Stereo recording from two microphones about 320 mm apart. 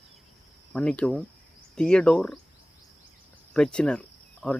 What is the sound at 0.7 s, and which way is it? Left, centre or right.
Speech, centre.